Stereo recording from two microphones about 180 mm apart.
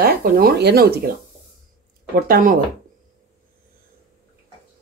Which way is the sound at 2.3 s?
50° right (ahead or behind).